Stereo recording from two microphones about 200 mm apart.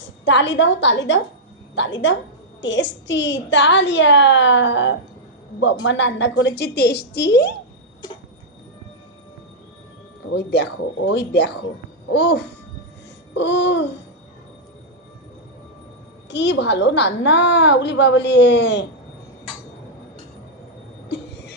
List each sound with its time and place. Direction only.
0.0 s a woman's voice: 65° left (ahead or behind)
10.3 s a woman's voice: 55° left (ahead or behind)
16.3 s a woman's voice: 60° left (ahead or behind)
21.1 s a sound: 60° left (ahead or behind)